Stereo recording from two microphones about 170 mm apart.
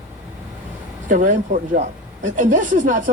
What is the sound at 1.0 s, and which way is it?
Speech, 50° right (ahead or behind).